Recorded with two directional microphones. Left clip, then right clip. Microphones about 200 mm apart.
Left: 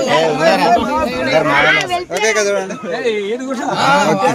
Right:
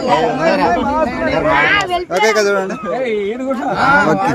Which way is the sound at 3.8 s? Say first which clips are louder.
Even; 40° left (ahead or behind).